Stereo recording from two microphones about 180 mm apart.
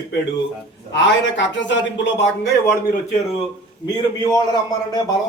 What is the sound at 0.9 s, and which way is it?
Speech, 85° left.